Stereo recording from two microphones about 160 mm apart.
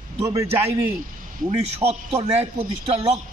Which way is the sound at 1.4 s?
35° right (ahead or behind).